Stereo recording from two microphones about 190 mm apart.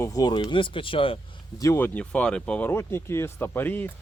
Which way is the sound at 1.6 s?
10° left (ahead or behind).